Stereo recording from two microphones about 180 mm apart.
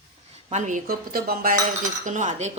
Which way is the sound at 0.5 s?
45° right (ahead or behind).